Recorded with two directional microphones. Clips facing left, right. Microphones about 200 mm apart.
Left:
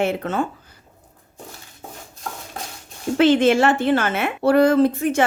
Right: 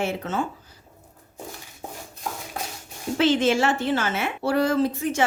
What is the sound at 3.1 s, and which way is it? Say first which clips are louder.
A woman's voice: left 5 dB; 55° left (ahead or behind).